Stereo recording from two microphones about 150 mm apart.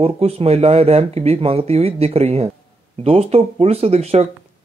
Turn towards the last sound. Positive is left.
turn(degrees=-45)  # may be behind; listen again after turning